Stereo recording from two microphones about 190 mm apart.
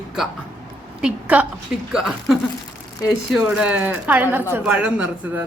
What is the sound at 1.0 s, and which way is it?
A woman's voice, 5° right (ahead or behind).